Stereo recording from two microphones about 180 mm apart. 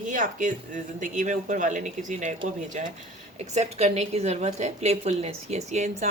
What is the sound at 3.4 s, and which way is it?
A woman's voice, 40° right (ahead or behind).